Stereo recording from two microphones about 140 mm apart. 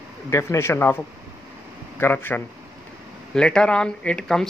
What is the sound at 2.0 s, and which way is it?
Speech, 15° left (ahead or behind).